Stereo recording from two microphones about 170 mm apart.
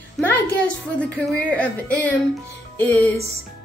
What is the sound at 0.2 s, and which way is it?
A woman's voice, 5° left (ahead or behind).